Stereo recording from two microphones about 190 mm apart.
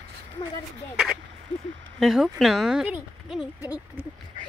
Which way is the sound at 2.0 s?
Centre (ahead or behind).